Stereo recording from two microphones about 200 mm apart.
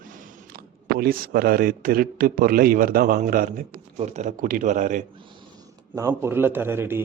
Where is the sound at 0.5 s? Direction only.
50° right (ahead or behind).